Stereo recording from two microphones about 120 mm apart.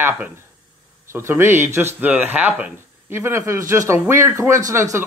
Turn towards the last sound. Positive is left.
turn(degrees=-25)  # may be behind; listen again after turning